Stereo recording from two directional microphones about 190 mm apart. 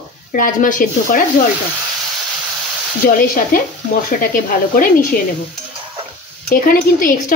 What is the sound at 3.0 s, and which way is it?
Speech, 45° left (ahead or behind).